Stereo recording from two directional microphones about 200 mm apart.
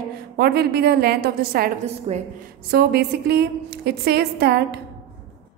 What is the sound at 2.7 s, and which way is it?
A woman's voice, 50° right (ahead or behind).